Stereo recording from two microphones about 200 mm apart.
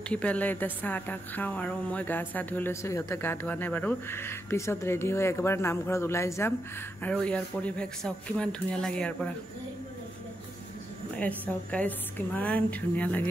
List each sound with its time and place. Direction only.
0.1 s a woman's voice: 5° left (ahead or behind)
11.1 s a woman's voice: 5° left (ahead or behind)